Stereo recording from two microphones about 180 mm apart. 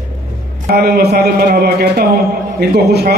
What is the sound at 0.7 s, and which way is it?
A man's voice, 60° right (ahead or behind).